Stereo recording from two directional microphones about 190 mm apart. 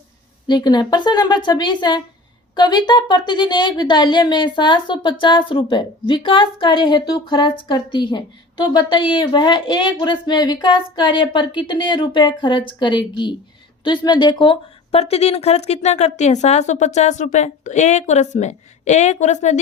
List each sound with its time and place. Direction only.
0.4 s a woman's voice: 20° left (ahead or behind); by 19.5 s 40° left (ahead or behind)